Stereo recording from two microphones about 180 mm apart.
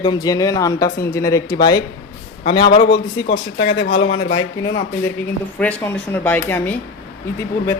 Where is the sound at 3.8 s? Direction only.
30° left (ahead or behind).